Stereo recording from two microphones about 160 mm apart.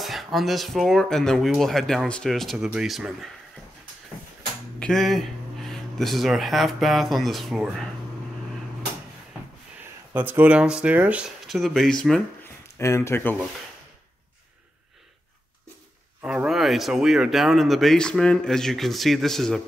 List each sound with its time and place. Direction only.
0.0 s speech: centre (ahead or behind)
4.7 s speech: 5° left (ahead or behind)
10.1 s speech: 10° right (ahead or behind); by 12.2 s 5° left (ahead or behind)
12.7 s speech: 15° left (ahead or behind)
16.2 s speech: 5° right (ahead or behind)